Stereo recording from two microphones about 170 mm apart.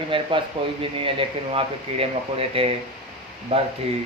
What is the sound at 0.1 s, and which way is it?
Speech, 30° right (ahead or behind).